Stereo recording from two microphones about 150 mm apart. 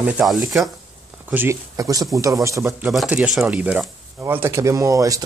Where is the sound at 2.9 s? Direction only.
5° right (ahead or behind); by 5.2 s 25° right (ahead or behind).